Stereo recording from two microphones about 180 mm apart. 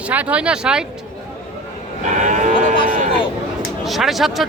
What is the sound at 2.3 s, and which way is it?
Sheep, 45° right (ahead or behind).